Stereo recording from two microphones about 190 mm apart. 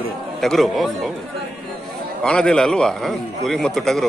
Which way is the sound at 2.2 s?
5° left (ahead or behind).